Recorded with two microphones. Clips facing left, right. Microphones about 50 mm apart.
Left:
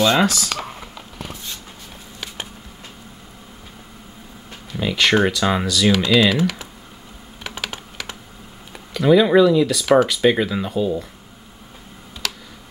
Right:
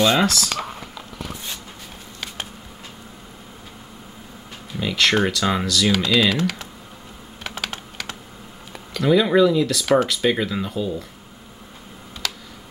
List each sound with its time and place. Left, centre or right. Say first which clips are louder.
0.2 s speech: left 1 dB; centre
4.7 s speech: left 2 dB; centre
7.4 s computer keyboard: even; centre
8.7 s speech: left 3 dB; centre